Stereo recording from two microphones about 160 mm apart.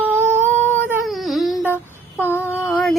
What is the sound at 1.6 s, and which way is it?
Child singing, 15° left (ahead or behind).